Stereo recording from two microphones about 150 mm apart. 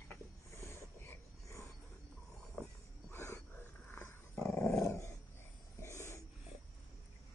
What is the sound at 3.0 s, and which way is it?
Dog, 15° left (ahead or behind).